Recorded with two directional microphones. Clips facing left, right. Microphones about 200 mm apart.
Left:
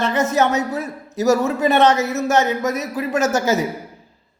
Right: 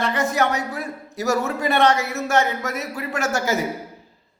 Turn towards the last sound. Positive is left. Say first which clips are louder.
# left 5 dB
turn(degrees=20)  # may be behind; listen again after turning